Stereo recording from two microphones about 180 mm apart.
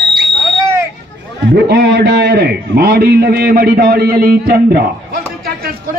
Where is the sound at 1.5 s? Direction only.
65° right (ahead or behind).